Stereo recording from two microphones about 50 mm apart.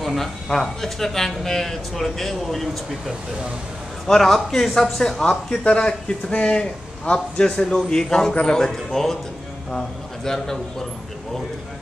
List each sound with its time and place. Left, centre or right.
0.0 s speech: centre
4.1 s a man's voice: centre